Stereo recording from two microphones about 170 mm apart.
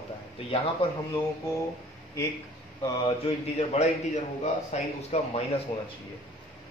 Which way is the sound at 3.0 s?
35° left (ahead or behind).